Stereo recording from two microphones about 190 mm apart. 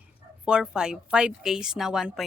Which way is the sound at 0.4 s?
5° right (ahead or behind).